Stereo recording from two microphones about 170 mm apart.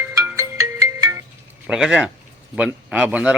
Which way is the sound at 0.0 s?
15° right (ahead or behind).